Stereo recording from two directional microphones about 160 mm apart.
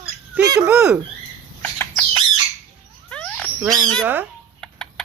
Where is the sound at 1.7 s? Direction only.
15° left (ahead or behind).